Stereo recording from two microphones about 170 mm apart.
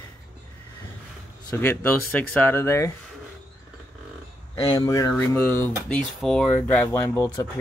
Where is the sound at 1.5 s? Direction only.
10° left (ahead or behind).